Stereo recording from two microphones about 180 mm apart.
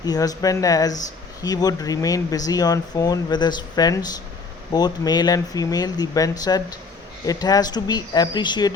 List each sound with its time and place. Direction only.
0.0 s speech: 20° left (ahead or behind)